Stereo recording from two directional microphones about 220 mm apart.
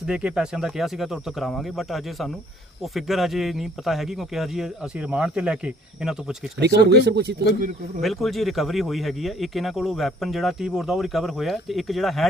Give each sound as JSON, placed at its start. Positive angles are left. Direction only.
{"t": 0.1, "sound": "speech", "side_deg": -5}
{"t": 6.9, "sound": "speech", "side_deg": -50}
{"t": 8.0, "sound": "speech", "side_deg": 0}